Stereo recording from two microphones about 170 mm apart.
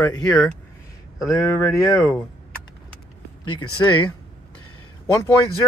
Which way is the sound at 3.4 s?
30° left (ahead or behind).